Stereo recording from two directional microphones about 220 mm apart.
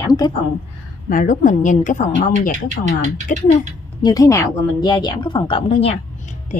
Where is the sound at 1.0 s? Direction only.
35° left (ahead or behind).